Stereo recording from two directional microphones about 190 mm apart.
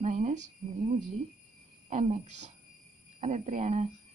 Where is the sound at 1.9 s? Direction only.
35° right (ahead or behind).